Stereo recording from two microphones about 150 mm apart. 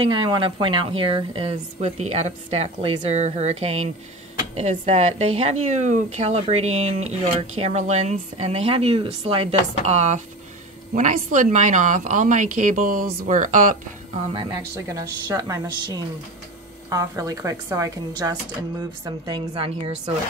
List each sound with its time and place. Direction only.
0.0 s a woman's voice: 35° right (ahead or behind); by 13.7 s 60° right (ahead or behind)
14.3 s a woman's voice: 30° right (ahead or behind)